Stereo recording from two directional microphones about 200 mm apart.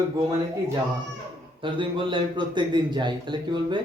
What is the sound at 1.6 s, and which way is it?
Speech, 25° right (ahead or behind).